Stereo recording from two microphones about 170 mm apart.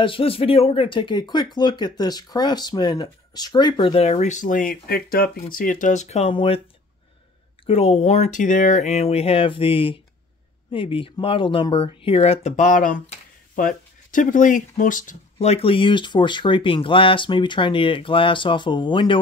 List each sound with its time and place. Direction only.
0.0 s speech: 30° left (ahead or behind)
7.6 s speech: 35° left (ahead or behind)